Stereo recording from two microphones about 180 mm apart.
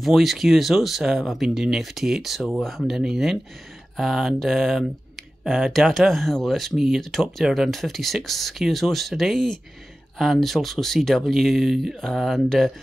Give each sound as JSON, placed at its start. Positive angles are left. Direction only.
{"t": 0.0, "sound": "speech", "side_deg": 0}